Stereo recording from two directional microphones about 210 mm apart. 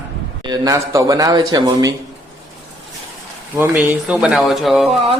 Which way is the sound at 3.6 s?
10° right (ahead or behind).